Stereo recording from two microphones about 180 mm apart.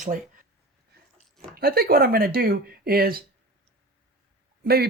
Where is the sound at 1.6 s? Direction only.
55° right (ahead or behind).